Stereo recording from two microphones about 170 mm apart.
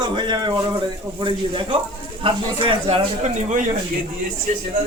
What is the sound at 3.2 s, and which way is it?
Speech, 45° right (ahead or behind).